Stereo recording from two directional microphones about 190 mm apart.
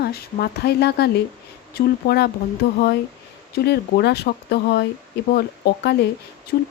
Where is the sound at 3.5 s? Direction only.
55° left (ahead or behind).